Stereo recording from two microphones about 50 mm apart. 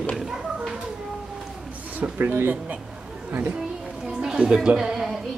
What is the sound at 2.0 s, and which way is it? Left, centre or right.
Speech, right.